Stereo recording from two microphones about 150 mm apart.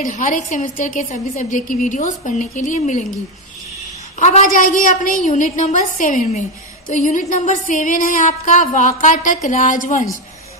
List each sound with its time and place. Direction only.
0.0 s a woman's voice: 55° left (ahead or behind)
4.2 s music: 55° left (ahead or behind)